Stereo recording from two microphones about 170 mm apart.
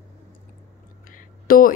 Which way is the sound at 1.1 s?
55° left (ahead or behind).